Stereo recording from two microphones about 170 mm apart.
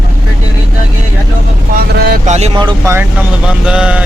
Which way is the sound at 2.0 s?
60° right (ahead or behind).